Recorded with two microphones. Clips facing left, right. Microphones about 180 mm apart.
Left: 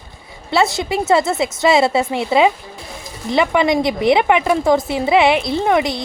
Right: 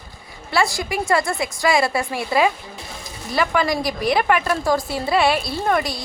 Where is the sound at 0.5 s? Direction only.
20° left (ahead or behind).